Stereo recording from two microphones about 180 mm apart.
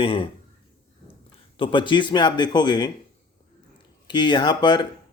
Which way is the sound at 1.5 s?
30° left (ahead or behind).